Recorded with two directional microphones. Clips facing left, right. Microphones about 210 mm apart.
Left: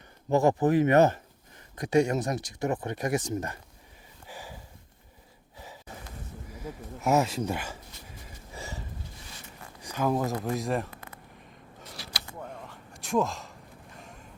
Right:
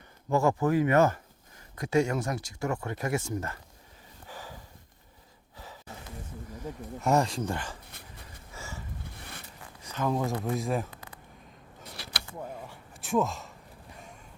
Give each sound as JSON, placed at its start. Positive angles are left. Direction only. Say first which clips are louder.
{"t": 0.3, "sound": "speech", "louder": "left 2 dB", "side_deg": 20}
{"t": 4.3, "sound": "snort", "louder": "left 1 dB", "side_deg": 10}
{"t": 7.0, "sound": "speech", "louder": "left 1 dB", "side_deg": 5}
{"t": 8.5, "sound": "a sound", "louder": "left 3 dB", "side_deg": 20}
{"t": 9.8, "sound": "speech", "louder": "left 2 dB", "side_deg": 10}
{"t": 12.4, "sound": "a sound", "louder": "right 3 dB", "side_deg": -10}